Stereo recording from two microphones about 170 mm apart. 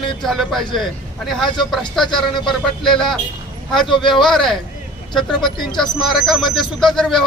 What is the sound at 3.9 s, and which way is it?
Speech, 30° left (ahead or behind).